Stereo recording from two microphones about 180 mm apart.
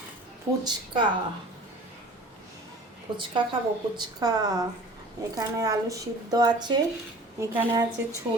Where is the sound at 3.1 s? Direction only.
30° right (ahead or behind).